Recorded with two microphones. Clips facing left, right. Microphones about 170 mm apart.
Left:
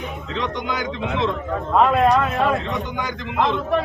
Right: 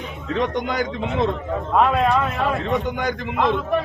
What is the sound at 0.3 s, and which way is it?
Speech, 50° right (ahead or behind).